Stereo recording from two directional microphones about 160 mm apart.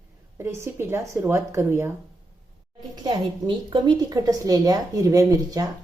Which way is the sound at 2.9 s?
25° right (ahead or behind).